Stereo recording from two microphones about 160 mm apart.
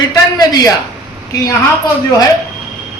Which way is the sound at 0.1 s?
25° left (ahead or behind).